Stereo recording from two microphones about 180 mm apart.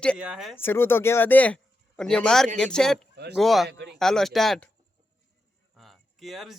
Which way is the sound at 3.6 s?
70° right (ahead or behind).